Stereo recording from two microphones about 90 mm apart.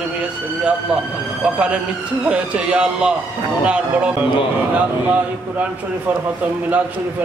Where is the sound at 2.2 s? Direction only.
10° right (ahead or behind).